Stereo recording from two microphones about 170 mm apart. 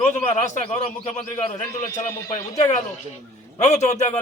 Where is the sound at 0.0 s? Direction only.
45° left (ahead or behind).